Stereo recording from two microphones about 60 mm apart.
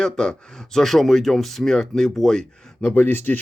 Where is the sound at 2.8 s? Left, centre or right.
Left.